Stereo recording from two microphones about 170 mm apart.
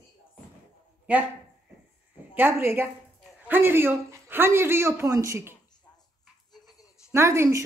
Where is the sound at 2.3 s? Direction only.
10° right (ahead or behind).